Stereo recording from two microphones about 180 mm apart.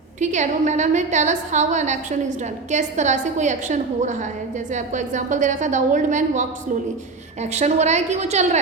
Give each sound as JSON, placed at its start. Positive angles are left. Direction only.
{"t": 0.2, "sound": "a woman's voice", "side_deg": -40}
{"t": 7.5, "sound": "a woman's voice", "side_deg": -40}